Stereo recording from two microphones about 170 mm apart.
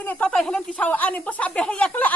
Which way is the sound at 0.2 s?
5° left (ahead or behind).